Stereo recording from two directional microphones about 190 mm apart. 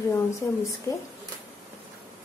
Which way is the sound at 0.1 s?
15° left (ahead or behind).